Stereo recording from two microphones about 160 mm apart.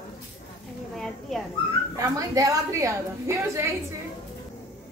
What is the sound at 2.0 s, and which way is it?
A woman's voice, 20° right (ahead or behind).